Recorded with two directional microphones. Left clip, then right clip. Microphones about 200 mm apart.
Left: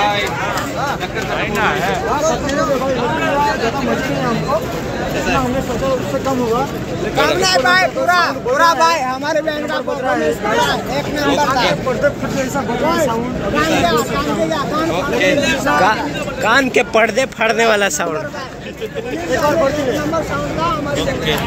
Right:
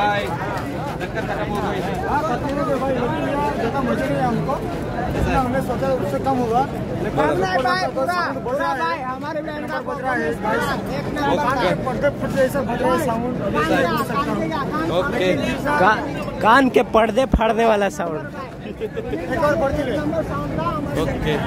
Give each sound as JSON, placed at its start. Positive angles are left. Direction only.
{"t": 7.2, "sound": "speech", "side_deg": 20}
{"t": 7.6, "sound": "speech", "side_deg": 5}
{"t": 8.5, "sound": "speech", "side_deg": 40}
{"t": 15.6, "sound": "speech", "side_deg": -15}